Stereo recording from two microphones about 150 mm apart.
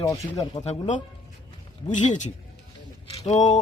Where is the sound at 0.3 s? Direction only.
45° left (ahead or behind).